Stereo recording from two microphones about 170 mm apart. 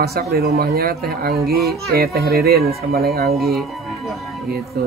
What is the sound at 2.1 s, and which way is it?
Speech, 65° right (ahead or behind).